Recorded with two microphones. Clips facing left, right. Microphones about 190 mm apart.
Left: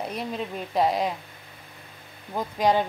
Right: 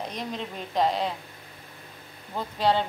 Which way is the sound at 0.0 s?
10° left (ahead or behind).